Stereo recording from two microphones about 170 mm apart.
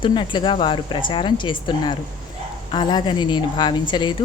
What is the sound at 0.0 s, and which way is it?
A woman's voice, 30° left (ahead or behind).